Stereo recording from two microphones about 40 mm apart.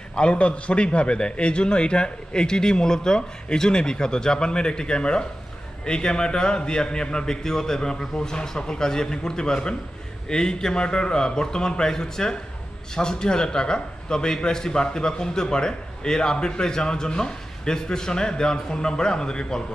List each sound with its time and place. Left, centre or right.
0.1 s a man's voice: left